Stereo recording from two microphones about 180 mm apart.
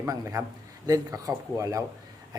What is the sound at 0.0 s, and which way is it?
Speech, 15° right (ahead or behind).